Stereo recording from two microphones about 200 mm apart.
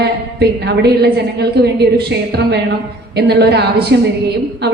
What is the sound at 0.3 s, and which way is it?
A woman's voice, 55° right (ahead or behind).